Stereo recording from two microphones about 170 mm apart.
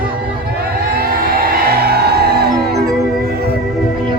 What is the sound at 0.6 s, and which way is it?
Music, 65° right (ahead or behind).